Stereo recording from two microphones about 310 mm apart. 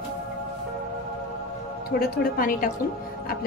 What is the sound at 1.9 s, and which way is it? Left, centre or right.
Speech, left.